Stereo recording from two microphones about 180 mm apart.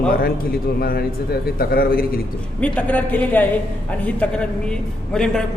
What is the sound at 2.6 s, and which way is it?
A woman's voice, 10° left (ahead or behind).